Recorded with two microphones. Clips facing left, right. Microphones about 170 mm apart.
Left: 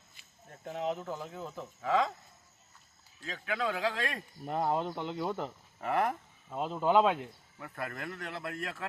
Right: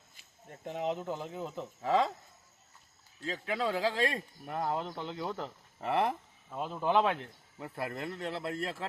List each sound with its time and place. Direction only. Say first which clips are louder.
0.5 s speech: right 1 dB; 10° right (ahead or behind)
1.8 s a man's voice: right 1 dB; 30° right (ahead or behind)
3.2 s a man's voice: right 1 dB; 30° right (ahead or behind)
4.4 s speech: left 3 dB; 20° left (ahead or behind)
5.8 s speech: even; centre (ahead or behind)
6.5 s speech: left 2 dB; 20° left (ahead or behind)
7.6 s speech: right 2 dB; 25° right (ahead or behind)